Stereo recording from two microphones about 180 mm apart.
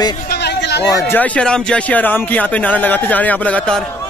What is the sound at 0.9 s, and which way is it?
Speech, 10° left (ahead or behind).